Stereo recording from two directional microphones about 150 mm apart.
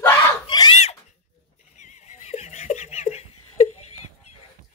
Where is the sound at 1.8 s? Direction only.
50° left (ahead or behind).